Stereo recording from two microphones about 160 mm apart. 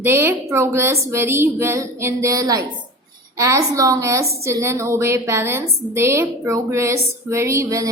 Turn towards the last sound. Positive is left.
turn(degrees=-20)  # may be behind; listen again after turning